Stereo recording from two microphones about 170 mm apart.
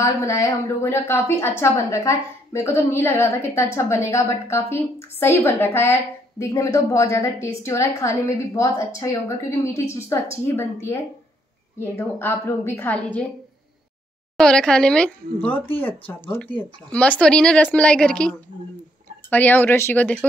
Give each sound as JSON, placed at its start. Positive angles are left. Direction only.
{"t": 0.0, "sound": "a woman's voice", "side_deg": 20}
{"t": 14.3, "sound": "a woman's voice", "side_deg": 5}
{"t": 19.3, "sound": "a woman's voice", "side_deg": 10}